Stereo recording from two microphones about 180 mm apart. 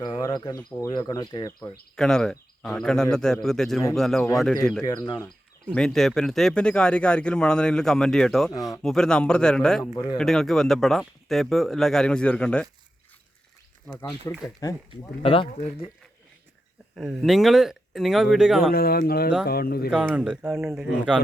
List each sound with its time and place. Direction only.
0.1 s speech: 20° left (ahead or behind)
2.0 s speech: 5° left (ahead or behind)
4.8 s speech: 20° left (ahead or behind)
5.7 s speech: 5° left (ahead or behind)
14.0 s speech: 15° left (ahead or behind)
15.2 s speech: 30° left (ahead or behind)
16.9 s speech: centre (ahead or behind)
18.7 s speech: 55° left (ahead or behind)
19.9 s speech: 5° right (ahead or behind)